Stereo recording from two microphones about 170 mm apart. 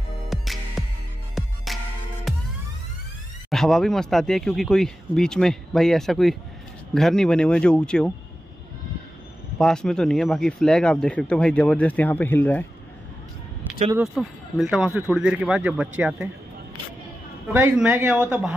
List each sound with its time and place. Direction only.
0.3 s music: centre (ahead or behind)
3.4 s speech: centre (ahead or behind)
9.6 s speech: 5° left (ahead or behind)
13.9 s speech: centre (ahead or behind)
17.5 s speech: 15° right (ahead or behind)